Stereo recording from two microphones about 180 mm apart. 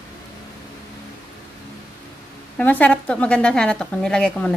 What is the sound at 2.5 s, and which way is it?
A woman's voice, 10° left (ahead or behind).